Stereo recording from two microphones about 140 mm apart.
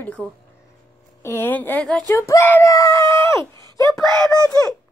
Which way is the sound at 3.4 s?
30° right (ahead or behind).